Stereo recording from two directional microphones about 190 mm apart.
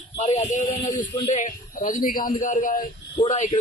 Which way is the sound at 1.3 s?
40° left (ahead or behind).